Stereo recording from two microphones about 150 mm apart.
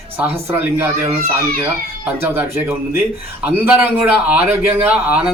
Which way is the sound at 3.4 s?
15° right (ahead or behind).